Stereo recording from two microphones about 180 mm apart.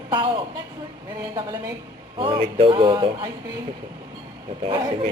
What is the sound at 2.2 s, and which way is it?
Speech, 30° right (ahead or behind).